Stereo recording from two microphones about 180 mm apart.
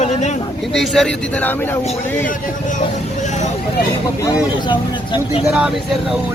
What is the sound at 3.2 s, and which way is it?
Vehicle, 40° left (ahead or behind).